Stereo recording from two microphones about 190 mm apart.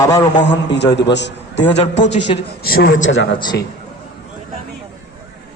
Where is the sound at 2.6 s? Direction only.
50° left (ahead or behind).